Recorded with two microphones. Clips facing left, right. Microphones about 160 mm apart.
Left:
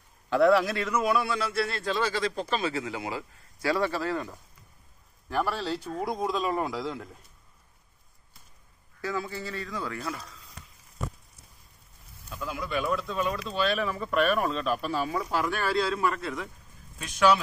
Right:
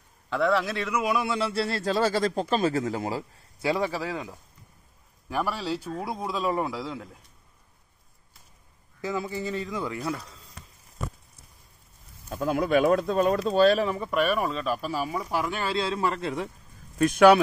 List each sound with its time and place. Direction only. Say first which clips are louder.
0.3 s speech: left 3 dB; 5° left (ahead or behind); by 3.3 s 40° right (ahead or behind)
3.6 s speech: even; 15° right (ahead or behind)
9.0 s speech: right 3 dB; 20° right (ahead or behind)
12.3 s speech: right 9 dB; 50° right (ahead or behind)
14.1 s speech: left 1 dB; 5° right (ahead or behind); by 16.4 s 30° right (ahead or behind)
17.0 s speech: right 7 dB; 55° right (ahead or behind)